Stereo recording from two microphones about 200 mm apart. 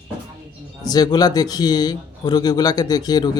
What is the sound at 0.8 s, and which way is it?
Speech, 20° left (ahead or behind).